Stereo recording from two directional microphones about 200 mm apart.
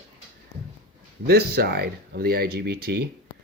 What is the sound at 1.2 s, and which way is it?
Speech, 50° right (ahead or behind).